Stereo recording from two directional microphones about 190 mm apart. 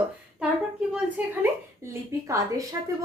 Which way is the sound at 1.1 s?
10° right (ahead or behind).